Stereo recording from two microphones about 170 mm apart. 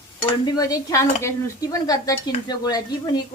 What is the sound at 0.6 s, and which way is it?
A woman's voice, 20° left (ahead or behind).